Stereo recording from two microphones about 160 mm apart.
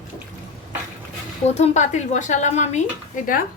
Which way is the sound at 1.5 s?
45° left (ahead or behind).